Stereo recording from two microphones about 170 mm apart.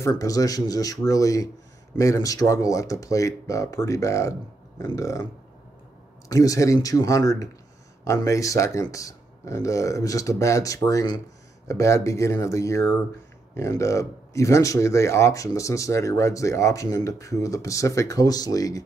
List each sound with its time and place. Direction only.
0.0 s speech: 20° left (ahead or behind)
6.2 s speech: 20° left (ahead or behind)